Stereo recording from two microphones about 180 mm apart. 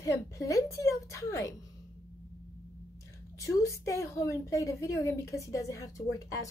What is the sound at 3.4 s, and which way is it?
A woman's voice, 15° left (ahead or behind).